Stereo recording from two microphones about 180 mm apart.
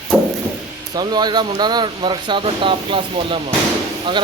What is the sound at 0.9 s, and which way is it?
Speech, 25° right (ahead or behind).